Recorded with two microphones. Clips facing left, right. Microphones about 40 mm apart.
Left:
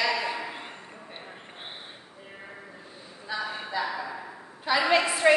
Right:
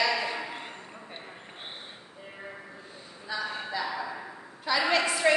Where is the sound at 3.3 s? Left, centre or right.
Centre.